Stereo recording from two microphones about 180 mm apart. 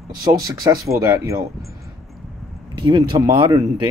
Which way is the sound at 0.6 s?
20° right (ahead or behind).